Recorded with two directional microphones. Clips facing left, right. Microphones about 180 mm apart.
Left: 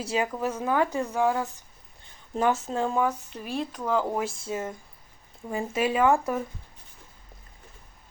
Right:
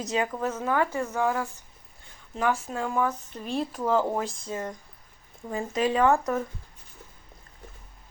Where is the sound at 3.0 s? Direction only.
10° left (ahead or behind).